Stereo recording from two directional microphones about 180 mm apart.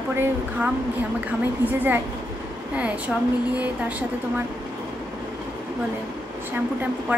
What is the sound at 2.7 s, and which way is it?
Speech, 5° right (ahead or behind).